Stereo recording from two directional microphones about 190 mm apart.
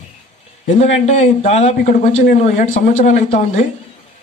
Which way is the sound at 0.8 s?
35° left (ahead or behind).